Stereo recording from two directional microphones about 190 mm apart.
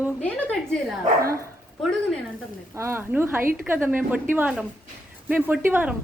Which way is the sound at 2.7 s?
15° right (ahead or behind).